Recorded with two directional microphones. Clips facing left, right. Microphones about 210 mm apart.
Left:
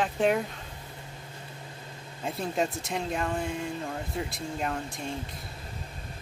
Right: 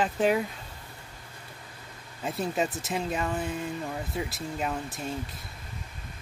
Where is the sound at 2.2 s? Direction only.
Centre (ahead or behind).